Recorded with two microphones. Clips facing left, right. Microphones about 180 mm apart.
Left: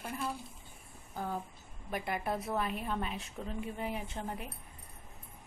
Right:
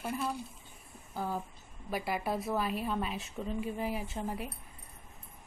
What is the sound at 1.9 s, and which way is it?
A woman's voice, 5° right (ahead or behind).